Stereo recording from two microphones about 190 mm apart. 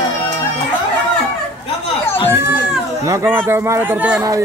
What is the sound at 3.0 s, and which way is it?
Speech, 15° right (ahead or behind).